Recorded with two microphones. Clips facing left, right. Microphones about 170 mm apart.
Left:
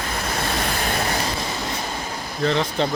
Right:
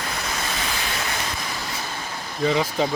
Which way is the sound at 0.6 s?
50° left (ahead or behind).